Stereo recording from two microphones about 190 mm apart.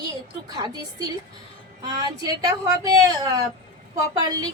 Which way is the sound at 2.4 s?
20° right (ahead or behind).